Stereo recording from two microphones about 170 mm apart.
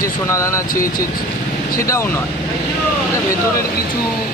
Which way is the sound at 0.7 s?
55° left (ahead or behind).